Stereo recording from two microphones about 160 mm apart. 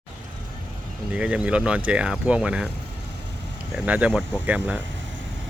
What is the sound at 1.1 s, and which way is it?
Speech, 10° right (ahead or behind).